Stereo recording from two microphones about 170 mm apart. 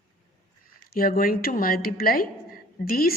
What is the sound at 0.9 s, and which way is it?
A woman's voice, 60° left (ahead or behind).